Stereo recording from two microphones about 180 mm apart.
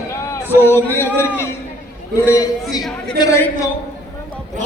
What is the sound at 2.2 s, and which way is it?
Speech, 20° left (ahead or behind).